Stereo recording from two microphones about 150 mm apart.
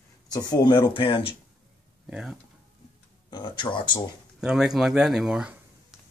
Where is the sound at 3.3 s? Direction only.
30° left (ahead or behind).